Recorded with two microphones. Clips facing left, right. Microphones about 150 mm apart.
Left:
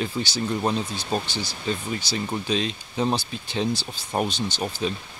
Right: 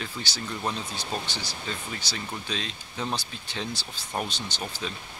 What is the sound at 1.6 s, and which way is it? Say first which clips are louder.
Speech: left 11 dB; 20° left (ahead or behind).